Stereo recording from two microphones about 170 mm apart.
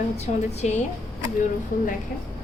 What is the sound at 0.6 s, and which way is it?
Speech, 40° left (ahead or behind).